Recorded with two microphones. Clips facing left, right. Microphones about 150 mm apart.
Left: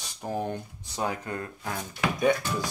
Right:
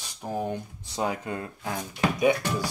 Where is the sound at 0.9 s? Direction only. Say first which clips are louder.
Right 2 dB; 20° right (ahead or behind).